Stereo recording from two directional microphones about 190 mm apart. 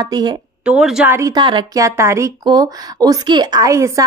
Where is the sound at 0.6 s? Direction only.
5° right (ahead or behind).